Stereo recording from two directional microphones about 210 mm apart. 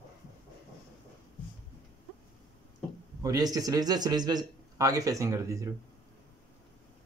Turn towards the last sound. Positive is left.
turn(degrees=-15)  # may be behind; listen again after turning